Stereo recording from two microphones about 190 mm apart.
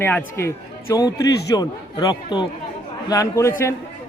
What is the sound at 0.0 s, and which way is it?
A man's voice, 10° left (ahead or behind).